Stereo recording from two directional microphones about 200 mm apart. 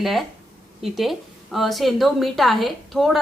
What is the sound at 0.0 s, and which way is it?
A woman's voice, centre (ahead or behind).